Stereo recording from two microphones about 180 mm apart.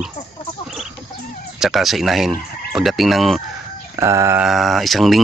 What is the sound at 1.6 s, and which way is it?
Speech, centre (ahead or behind).